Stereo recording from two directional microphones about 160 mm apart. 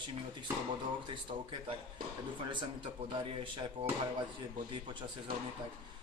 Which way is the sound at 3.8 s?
40° right (ahead or behind).